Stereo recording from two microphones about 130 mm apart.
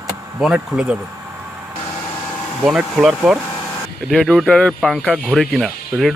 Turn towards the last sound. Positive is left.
turn(degrees=0)  # may be behind; listen again after turning